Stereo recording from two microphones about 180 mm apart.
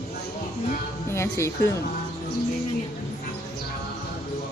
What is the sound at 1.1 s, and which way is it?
Speech, 15° left (ahead or behind).